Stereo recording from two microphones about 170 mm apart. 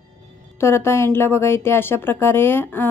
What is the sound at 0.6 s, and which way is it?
A woman's voice, 15° left (ahead or behind).